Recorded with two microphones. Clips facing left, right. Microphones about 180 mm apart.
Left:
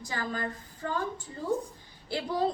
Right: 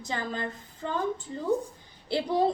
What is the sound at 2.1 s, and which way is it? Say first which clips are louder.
Speech: right 4 dB; 20° right (ahead or behind).